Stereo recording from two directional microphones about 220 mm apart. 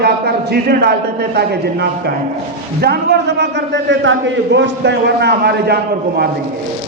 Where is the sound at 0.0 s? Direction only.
45° right (ahead or behind).